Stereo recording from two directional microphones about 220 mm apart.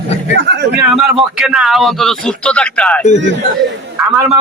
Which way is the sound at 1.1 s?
Centre (ahead or behind).